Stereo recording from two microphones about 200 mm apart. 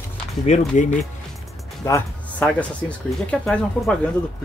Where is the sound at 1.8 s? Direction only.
10° left (ahead or behind).